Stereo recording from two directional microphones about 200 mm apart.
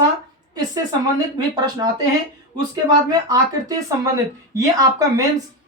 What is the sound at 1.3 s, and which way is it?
Speech, 20° right (ahead or behind).